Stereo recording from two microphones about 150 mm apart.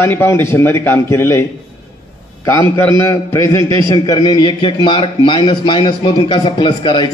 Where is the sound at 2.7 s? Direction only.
20° left (ahead or behind).